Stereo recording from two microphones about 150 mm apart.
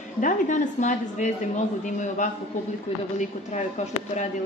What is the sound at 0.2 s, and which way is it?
A woman's voice, 55° left (ahead or behind).